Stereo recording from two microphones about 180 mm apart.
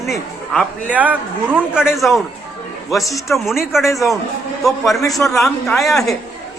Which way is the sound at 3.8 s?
15° left (ahead or behind).